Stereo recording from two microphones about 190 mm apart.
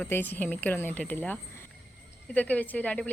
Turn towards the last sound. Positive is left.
turn(degrees=10)  # may be behind; listen again after turning